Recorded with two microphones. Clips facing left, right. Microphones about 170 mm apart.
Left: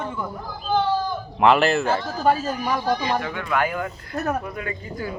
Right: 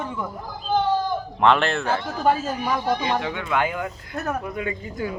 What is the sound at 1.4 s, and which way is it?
Speech, 5° left (ahead or behind).